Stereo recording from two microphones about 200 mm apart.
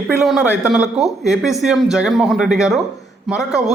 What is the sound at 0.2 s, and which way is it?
Speech, centre (ahead or behind).